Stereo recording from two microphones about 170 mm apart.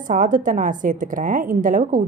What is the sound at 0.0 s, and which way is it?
A woman's voice, 50° right (ahead or behind).